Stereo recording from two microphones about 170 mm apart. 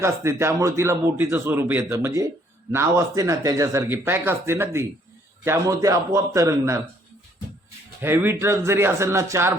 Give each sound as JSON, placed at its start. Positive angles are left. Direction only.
{"t": 0.0, "sound": "a man's voice", "side_deg": -15}
{"t": 8.0, "sound": "speech", "side_deg": -15}